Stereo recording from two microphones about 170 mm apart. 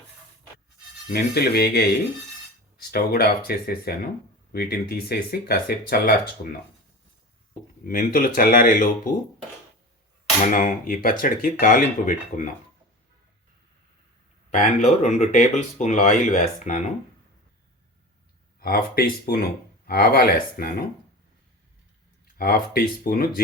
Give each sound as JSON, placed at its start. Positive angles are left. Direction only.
{"t": 1.1, "sound": "speech", "side_deg": 70}
{"t": 2.9, "sound": "speech", "side_deg": 65}
{"t": 7.9, "sound": "speech", "side_deg": 55}
{"t": 10.5, "sound": "speech", "side_deg": 50}
{"t": 14.5, "sound": "speech", "side_deg": 45}
{"t": 18.6, "sound": "speech", "side_deg": 60}
{"t": 22.4, "sound": "speech", "side_deg": 60}